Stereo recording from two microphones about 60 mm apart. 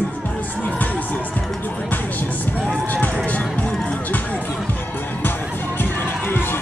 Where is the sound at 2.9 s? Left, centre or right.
Left.